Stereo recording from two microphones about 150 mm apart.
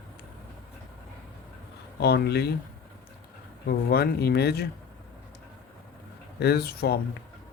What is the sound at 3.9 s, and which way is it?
Speech, 90° left.